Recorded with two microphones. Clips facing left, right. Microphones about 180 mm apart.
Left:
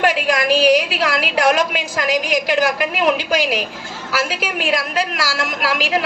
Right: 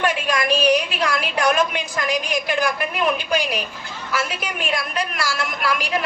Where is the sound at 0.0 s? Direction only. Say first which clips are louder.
Left 4 dB; 90° left.